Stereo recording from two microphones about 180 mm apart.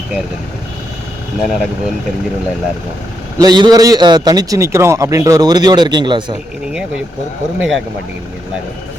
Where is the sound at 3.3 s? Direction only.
25° right (ahead or behind).